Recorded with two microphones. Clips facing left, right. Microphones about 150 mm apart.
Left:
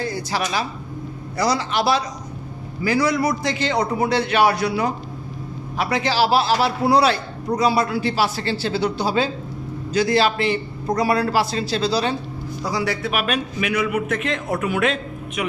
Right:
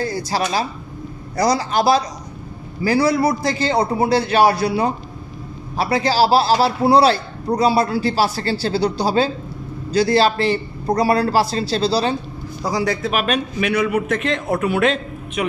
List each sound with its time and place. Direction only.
0.0 s a man's voice: 40° right (ahead or behind)